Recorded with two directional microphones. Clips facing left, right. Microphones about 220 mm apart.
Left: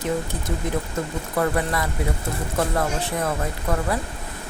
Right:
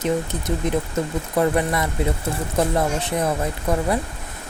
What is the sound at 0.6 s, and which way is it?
Speech, 20° right (ahead or behind).